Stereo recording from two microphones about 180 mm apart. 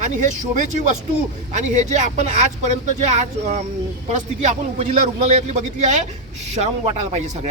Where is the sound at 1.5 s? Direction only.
40° right (ahead or behind).